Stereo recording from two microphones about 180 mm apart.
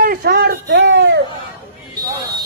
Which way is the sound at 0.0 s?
55° right (ahead or behind).